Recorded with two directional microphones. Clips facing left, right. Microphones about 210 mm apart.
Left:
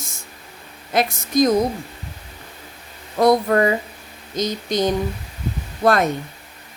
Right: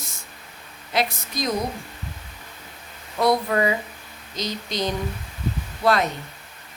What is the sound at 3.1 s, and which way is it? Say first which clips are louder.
Speech: left 5 dB; 45° left (ahead or behind).